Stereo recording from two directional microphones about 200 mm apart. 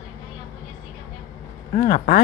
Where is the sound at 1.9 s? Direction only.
45° left (ahead or behind).